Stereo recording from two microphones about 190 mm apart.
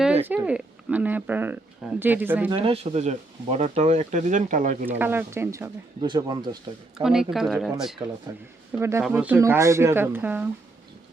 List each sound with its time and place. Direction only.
0.3 s speech: 10° right (ahead or behind)
2.6 s speech: 30° right (ahead or behind)
4.9 s speech: 10° right (ahead or behind)
7.0 s speech: 5° right (ahead or behind)
8.3 s speech: 15° right (ahead or behind)